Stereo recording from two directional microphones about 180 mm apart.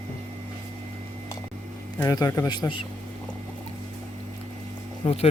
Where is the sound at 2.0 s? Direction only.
20° left (ahead or behind).